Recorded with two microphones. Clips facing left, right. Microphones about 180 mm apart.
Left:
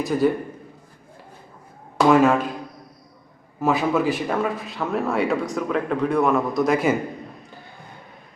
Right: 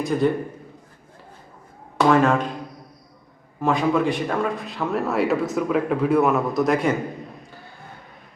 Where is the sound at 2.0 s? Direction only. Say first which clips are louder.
Left 1 dB; 5° left (ahead or behind).